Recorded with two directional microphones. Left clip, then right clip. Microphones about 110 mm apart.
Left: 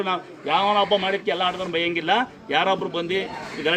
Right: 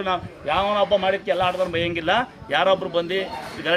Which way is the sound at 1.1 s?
30° right (ahead or behind).